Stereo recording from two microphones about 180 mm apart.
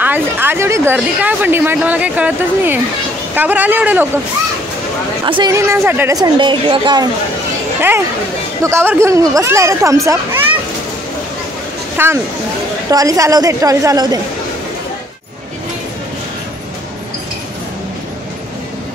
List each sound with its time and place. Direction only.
0.0 s a woman's voice: 10° right (ahead or behind)
5.2 s a woman's voice: 25° right (ahead or behind)
8.6 s a woman's voice: 15° right (ahead or behind)
12.0 s a woman's voice: 10° right (ahead or behind)